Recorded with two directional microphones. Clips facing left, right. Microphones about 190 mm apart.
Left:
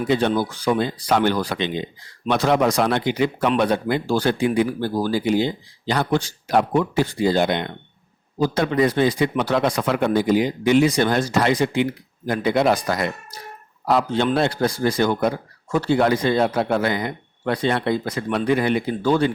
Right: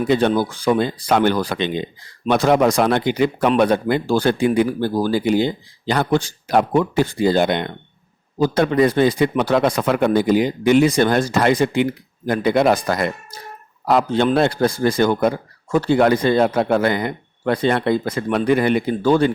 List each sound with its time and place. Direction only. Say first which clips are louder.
0.1 s speech: right 2 dB; 50° right (ahead or behind)